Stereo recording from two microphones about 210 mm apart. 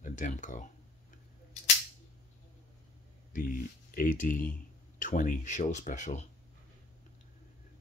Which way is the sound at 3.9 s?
40° left (ahead or behind).